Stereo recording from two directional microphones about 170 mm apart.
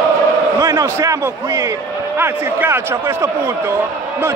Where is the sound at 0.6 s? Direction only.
20° right (ahead or behind).